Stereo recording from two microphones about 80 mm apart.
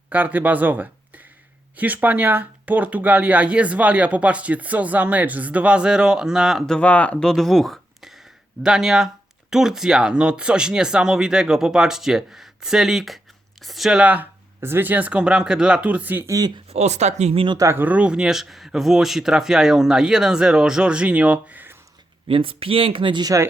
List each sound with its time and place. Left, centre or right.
0.1 s speech: right; by 6.7 s centre
6.7 s speech: centre
14.0 s speech: centre
14.6 s speech: right
16.2 s speech: right
17.7 s speech: centre
22.9 s speech: right